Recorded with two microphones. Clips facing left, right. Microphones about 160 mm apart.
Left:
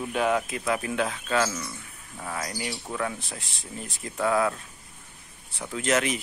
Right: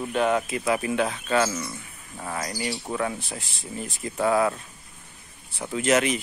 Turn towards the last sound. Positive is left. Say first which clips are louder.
# right 3 dB
turn(degrees=0)  # may be behind; listen again after turning